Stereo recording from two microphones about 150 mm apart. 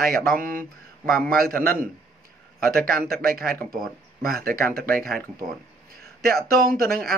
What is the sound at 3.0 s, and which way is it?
Mantra, 75° right (ahead or behind).